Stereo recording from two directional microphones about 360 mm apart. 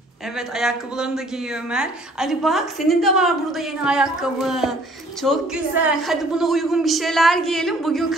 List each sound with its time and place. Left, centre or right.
0.6 s a woman's voice: centre